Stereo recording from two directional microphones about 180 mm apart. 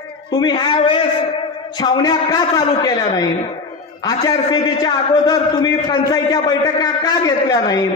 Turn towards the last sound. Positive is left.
turn(degrees=20)  # may be behind; listen again after turning